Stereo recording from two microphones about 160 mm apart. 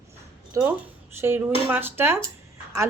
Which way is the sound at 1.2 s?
10° right (ahead or behind).